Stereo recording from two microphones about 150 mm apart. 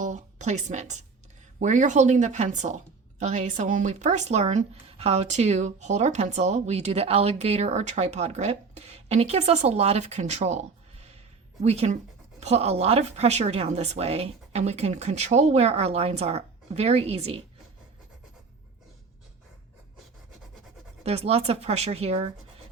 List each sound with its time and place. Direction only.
0.0 s a woman's voice: 55° right (ahead or behind)
21.0 s a woman's voice: 45° right (ahead or behind)